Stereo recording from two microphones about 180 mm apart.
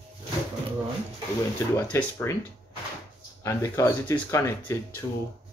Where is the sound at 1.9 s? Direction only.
10° left (ahead or behind).